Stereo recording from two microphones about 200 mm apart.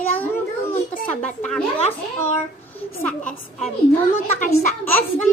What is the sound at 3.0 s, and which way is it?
Speech, 5° left (ahead or behind).